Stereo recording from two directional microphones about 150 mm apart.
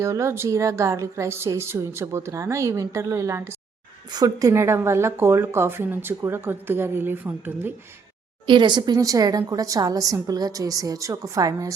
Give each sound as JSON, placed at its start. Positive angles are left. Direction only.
{"t": 0.0, "sound": "a woman's voice", "side_deg": -20}
{"t": 8.4, "sound": "a woman's voice", "side_deg": -30}